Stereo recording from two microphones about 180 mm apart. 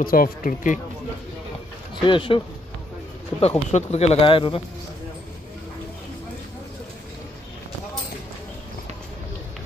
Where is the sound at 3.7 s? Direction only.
40° left (ahead or behind).